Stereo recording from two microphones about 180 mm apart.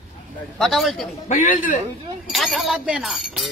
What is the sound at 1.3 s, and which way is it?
Speech, 45° left (ahead or behind).